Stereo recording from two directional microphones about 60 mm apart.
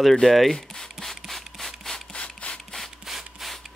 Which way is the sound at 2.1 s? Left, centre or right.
Centre.